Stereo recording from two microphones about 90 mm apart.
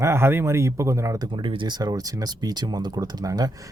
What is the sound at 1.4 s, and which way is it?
Speech, 65° right (ahead or behind).